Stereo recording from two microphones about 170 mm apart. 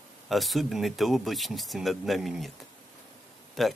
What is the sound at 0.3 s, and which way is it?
Speech, centre (ahead or behind).